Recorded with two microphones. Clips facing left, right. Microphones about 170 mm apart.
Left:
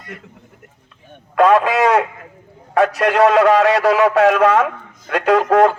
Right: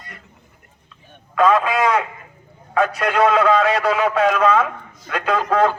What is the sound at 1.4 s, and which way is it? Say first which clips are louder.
A man's voice: left 3 dB; 70° left (ahead or behind).